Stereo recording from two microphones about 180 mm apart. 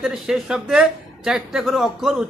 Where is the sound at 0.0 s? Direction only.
5° right (ahead or behind).